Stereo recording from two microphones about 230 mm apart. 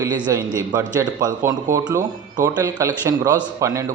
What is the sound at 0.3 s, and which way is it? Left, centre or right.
A man's voice, centre.